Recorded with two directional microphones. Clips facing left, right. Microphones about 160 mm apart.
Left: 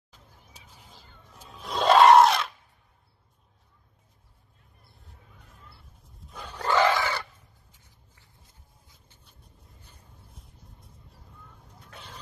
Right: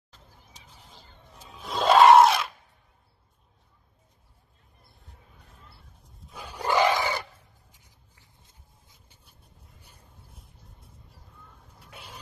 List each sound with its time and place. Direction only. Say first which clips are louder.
0.7 s music: right 1 dB; 5° left (ahead or behind)
6.1 s wild animals: even; 5° right (ahead or behind)
8.4 s a sound: even; 20° right (ahead or behind)
9.2 s vehicle: left 1 dB; 10° right (ahead or behind)
11.4 s vehicle: left 1 dB; 10° right (ahead or behind)